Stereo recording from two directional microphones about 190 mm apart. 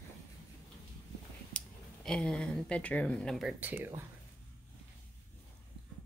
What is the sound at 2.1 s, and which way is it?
Speech, 5° left (ahead or behind).